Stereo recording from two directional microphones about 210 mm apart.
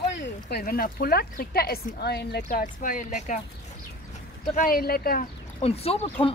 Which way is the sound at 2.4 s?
40° left (ahead or behind).